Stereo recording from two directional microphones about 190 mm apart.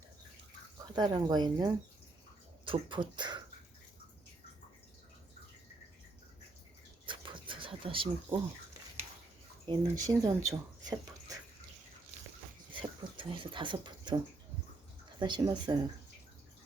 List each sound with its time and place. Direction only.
0.9 s speech: 20° right (ahead or behind)
7.0 s a sound: 25° right (ahead or behind)
9.6 s speech: 20° right (ahead or behind)
13.1 s speech: 25° right (ahead or behind)
15.2 s speech: 20° right (ahead or behind)